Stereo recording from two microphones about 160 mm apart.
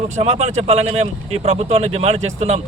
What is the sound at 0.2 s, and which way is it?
A man's voice, 45° right (ahead or behind).